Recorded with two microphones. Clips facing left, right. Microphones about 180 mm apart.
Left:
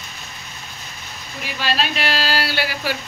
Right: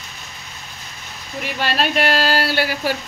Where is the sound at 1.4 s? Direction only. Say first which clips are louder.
Right 2 dB; 55° right (ahead or behind).